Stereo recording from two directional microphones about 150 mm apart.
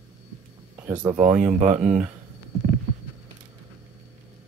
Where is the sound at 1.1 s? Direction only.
45° right (ahead or behind).